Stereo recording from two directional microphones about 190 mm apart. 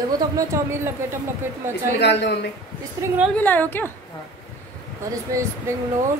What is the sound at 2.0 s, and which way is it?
Speech, 60° left (ahead or behind).